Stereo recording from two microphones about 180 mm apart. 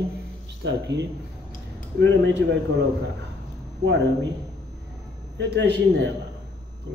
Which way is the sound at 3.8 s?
80° right.